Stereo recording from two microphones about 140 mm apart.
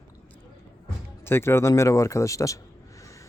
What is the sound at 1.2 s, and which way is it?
Speech, 15° left (ahead or behind).